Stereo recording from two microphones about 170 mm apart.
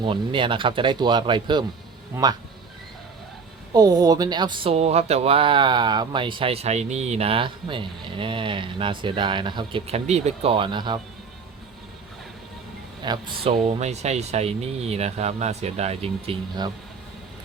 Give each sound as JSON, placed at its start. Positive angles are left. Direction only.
{"t": 0.0, "sound": "speech", "side_deg": -30}
{"t": 3.7, "sound": "speech", "side_deg": -20}
{"t": 13.0, "sound": "speech", "side_deg": -25}